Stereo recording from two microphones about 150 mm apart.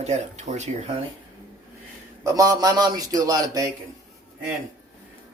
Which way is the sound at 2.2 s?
25° right (ahead or behind).